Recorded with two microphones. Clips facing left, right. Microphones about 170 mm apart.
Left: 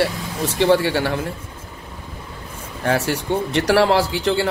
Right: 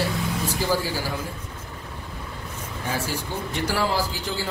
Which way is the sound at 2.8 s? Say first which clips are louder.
Left 9 dB; 75° left (ahead or behind).